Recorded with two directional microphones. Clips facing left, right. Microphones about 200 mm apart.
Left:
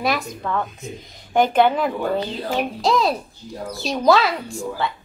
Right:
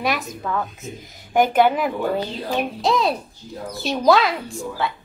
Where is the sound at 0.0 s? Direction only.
Centre (ahead or behind).